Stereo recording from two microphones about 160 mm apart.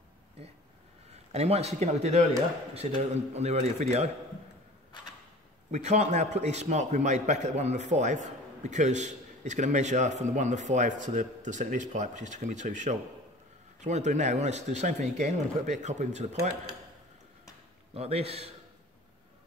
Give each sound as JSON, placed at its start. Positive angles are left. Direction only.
{"t": 0.4, "sound": "a man's voice", "side_deg": -40}
{"t": 5.7, "sound": "a man's voice", "side_deg": -45}
{"t": 17.9, "sound": "a man's voice", "side_deg": -40}